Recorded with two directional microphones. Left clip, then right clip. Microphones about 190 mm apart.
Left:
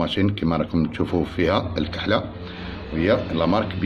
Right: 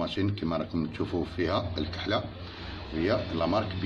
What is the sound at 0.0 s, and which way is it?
Speech, 35° left (ahead or behind).